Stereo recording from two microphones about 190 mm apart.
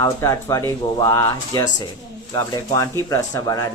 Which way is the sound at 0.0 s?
15° left (ahead or behind).